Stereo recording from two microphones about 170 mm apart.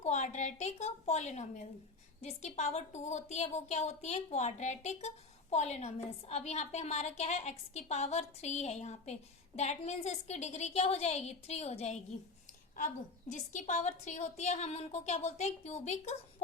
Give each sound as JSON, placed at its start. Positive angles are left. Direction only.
{"t": 0.0, "sound": "a woman's voice", "side_deg": 40}